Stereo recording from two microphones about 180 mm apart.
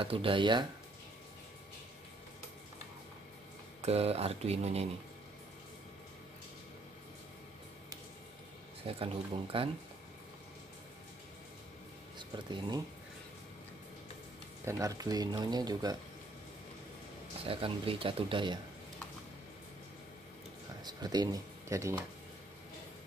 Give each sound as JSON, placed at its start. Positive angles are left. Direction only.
{"t": 0.0, "sound": "speech", "side_deg": -30}
{"t": 3.8, "sound": "speech", "side_deg": -35}
{"t": 8.8, "sound": "speech", "side_deg": -30}
{"t": 12.2, "sound": "speech", "side_deg": -25}
{"t": 14.6, "sound": "speech", "side_deg": -15}
{"t": 17.5, "sound": "speech", "side_deg": -30}
{"t": 20.8, "sound": "speech", "side_deg": -20}